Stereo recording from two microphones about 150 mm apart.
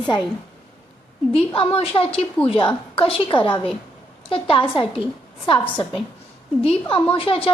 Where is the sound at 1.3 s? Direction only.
40° left (ahead or behind).